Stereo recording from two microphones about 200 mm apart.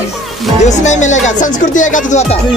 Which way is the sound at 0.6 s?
35° left (ahead or behind).